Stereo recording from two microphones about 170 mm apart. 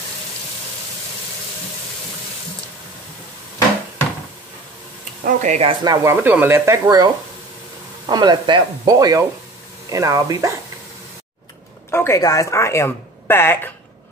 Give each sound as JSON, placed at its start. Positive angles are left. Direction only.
{"t": 5.2, "sound": "speech", "side_deg": -45}
{"t": 5.9, "sound": "speech", "side_deg": -15}
{"t": 8.1, "sound": "speech", "side_deg": -25}
{"t": 11.9, "sound": "speech", "side_deg": 15}